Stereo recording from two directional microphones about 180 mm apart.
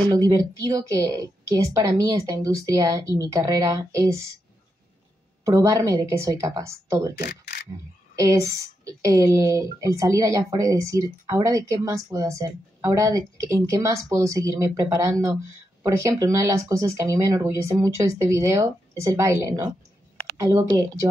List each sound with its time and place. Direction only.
0.1 s a woman's voice: 20° right (ahead or behind)
5.4 s speech: 15° right (ahead or behind)
20.7 s a woman's voice: 20° right (ahead or behind)